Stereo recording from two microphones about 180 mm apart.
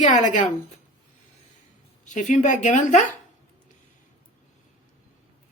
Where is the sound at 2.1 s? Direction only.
45° left (ahead or behind).